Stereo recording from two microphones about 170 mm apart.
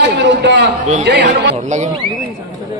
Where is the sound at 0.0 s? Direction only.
90° right.